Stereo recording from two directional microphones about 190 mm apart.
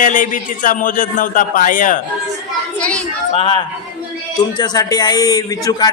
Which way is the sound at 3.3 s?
30° left (ahead or behind).